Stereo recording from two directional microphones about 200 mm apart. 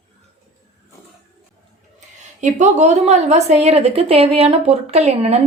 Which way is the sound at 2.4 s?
35° right (ahead or behind).